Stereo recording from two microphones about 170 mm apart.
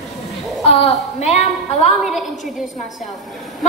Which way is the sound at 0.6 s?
35° left (ahead or behind).